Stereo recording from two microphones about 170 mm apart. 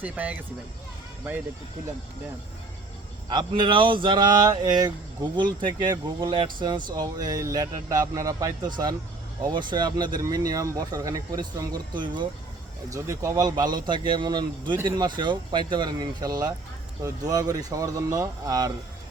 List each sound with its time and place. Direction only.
0.0 s speech: 10° right (ahead or behind)
3.2 s speech: 30° right (ahead or behind)